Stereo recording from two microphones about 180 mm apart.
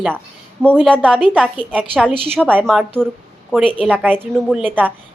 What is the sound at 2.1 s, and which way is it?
Speech, 30° right (ahead or behind).